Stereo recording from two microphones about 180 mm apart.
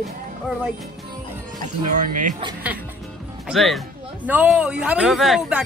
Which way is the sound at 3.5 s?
Centre (ahead or behind).